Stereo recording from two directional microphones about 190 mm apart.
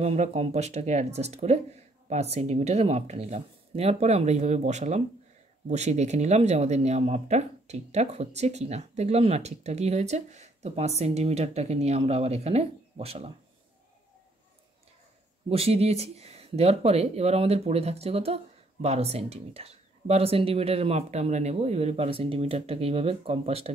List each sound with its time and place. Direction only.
0.0 s speech: 35° right (ahead or behind)
15.5 s speech: 30° right (ahead or behind)